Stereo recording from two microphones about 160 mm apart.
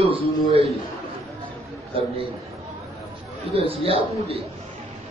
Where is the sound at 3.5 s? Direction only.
35° right (ahead or behind).